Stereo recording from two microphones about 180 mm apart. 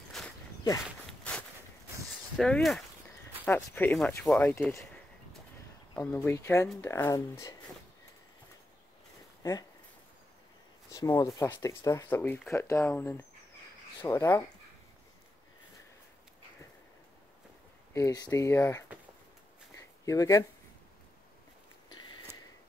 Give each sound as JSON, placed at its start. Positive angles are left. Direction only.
{"t": 0.2, "sound": "walk", "side_deg": 5}
{"t": 2.3, "sound": "speech", "side_deg": 5}
{"t": 6.1, "sound": "speech", "side_deg": 15}
{"t": 9.4, "sound": "speech", "side_deg": 20}
{"t": 10.9, "sound": "speech", "side_deg": 20}
{"t": 17.9, "sound": "speech", "side_deg": 20}
{"t": 19.7, "sound": "a sound", "side_deg": 15}